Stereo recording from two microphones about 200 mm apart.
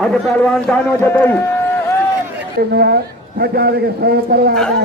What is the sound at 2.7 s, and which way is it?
Speech, 55° right (ahead or behind).